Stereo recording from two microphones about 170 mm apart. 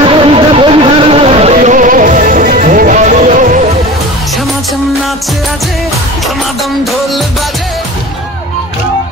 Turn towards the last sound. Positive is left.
turn(degrees=0)  # may be behind; listen again after turning